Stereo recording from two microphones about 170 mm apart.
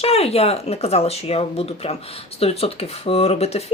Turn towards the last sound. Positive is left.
turn(degrees=40)  # may be behind; listen again after turning